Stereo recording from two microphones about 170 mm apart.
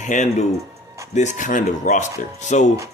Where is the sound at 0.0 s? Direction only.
45° left (ahead or behind).